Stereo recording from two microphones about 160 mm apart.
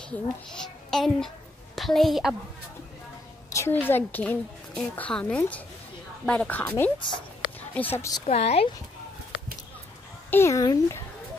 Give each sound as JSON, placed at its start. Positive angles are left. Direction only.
{"t": 0.1, "sound": "a child's voice", "side_deg": 5}
{"t": 3.5, "sound": "a woman's voice", "side_deg": 15}
{"t": 7.0, "sound": "speech", "side_deg": 30}
{"t": 7.7, "sound": "a woman's voice", "side_deg": 10}
{"t": 8.3, "sound": "speech", "side_deg": 40}
{"t": 10.3, "sound": "speech", "side_deg": 20}